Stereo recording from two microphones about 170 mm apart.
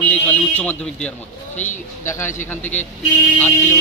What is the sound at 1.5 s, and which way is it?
Speech, 45° left (ahead or behind).